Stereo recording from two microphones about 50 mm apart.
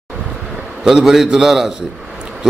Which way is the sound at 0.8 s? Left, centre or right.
Centre.